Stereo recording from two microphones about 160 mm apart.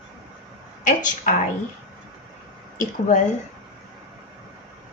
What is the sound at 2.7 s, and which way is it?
Speech, 55° left (ahead or behind).